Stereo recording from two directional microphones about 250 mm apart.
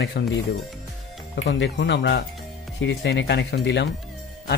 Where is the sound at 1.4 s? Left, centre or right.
Left.